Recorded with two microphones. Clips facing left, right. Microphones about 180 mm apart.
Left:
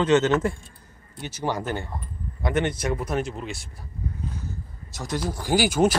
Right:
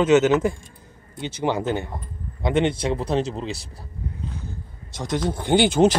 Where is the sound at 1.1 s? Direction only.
20° right (ahead or behind).